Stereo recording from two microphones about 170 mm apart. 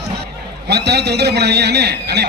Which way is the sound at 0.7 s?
75° right (ahead or behind).